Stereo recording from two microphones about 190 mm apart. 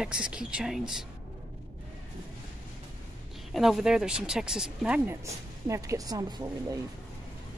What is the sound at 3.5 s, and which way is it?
Speech, centre (ahead or behind).